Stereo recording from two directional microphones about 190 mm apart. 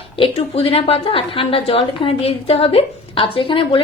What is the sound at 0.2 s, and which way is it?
A woman's voice, 30° left (ahead or behind).